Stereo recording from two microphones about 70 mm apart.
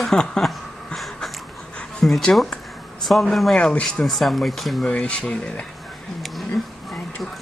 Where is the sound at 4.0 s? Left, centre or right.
Centre.